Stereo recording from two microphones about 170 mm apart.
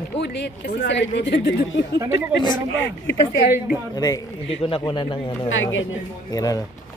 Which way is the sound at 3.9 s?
20° left (ahead or behind).